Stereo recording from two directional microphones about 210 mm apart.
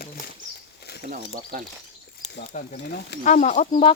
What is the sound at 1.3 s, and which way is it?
Speech, 40° right (ahead or behind).